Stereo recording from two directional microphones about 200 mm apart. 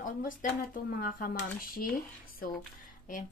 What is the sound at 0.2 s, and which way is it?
Speech, 45° left (ahead or behind).